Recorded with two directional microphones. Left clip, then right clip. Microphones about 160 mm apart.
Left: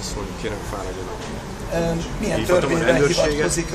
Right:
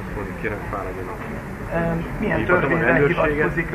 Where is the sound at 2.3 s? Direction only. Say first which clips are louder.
Even; 35° left (ahead or behind).